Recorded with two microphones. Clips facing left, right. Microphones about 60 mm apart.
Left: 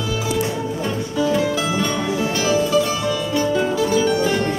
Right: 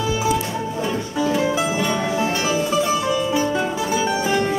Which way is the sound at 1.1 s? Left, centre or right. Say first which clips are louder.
Left 1 dB; centre.